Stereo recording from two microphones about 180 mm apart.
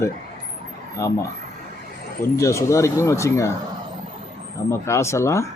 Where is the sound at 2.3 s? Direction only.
15° left (ahead or behind).